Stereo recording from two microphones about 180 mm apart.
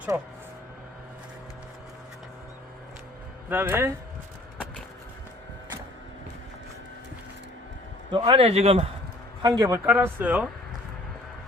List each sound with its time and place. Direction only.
0.1 s speech: 15° right (ahead or behind)
3.5 s speech: 15° right (ahead or behind)
8.1 s a man's voice: 30° right (ahead or behind)
9.4 s speech: 20° right (ahead or behind)